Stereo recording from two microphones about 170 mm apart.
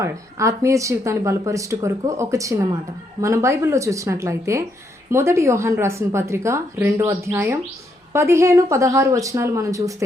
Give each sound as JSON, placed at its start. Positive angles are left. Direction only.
{"t": 0.0, "sound": "a woman's voice", "side_deg": -15}